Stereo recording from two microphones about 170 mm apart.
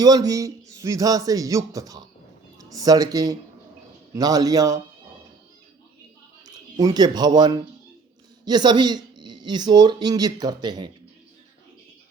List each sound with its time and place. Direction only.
0.0 s speech: 20° right (ahead or behind)
6.4 s speech: 25° right (ahead or behind)